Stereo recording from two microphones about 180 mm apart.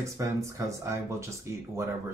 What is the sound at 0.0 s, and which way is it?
Speech, 15° right (ahead or behind).